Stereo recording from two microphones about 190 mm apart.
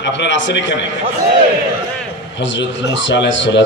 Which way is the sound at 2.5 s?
70° left (ahead or behind).